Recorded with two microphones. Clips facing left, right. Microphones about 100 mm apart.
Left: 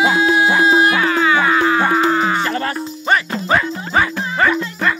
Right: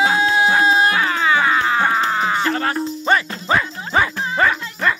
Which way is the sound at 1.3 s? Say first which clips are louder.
Even; 30° left (ahead or behind).